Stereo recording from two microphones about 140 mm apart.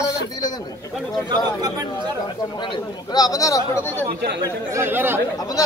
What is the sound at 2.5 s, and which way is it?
Speech, 35° left (ahead or behind).